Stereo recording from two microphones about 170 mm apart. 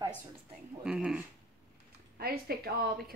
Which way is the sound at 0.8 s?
5° right (ahead or behind).